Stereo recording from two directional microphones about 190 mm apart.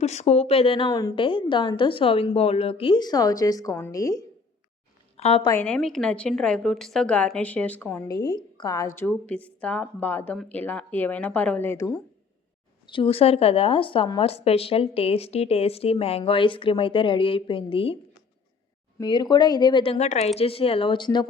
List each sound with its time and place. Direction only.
0.0 s a woman's voice: 35° left (ahead or behind); by 4.2 s 15° left (ahead or behind)
5.1 s a woman's voice: 30° left (ahead or behind)
5.5 s a woman's voice: 10° left (ahead or behind)
9.0 s speech: 10° left (ahead or behind)
12.9 s a woman's voice: 30° left (ahead or behind)
18.9 s a woman's voice: 25° left (ahead or behind)